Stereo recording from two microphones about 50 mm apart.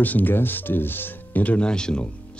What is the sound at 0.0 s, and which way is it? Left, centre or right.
Speech, left.